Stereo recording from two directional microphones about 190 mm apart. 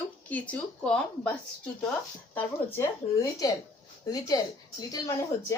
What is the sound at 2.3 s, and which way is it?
A woman's voice, 10° left (ahead or behind).